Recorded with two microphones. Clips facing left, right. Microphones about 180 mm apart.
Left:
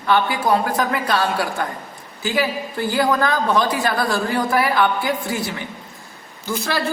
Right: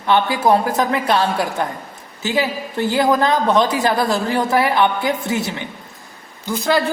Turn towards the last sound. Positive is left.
turn(degrees=-15)  # may be behind; listen again after turning